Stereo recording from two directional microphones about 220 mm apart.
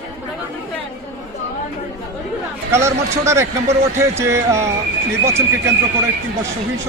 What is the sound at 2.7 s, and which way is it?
Speech, 10° right (ahead or behind).